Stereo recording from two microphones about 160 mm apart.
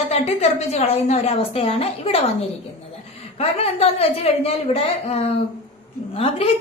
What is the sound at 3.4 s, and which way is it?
A woman's voice, 40° left (ahead or behind).